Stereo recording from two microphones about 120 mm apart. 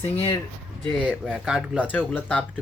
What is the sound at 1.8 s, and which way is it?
Speech, 15° left (ahead or behind).